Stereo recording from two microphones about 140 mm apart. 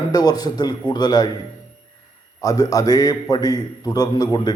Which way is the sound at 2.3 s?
25° left (ahead or behind).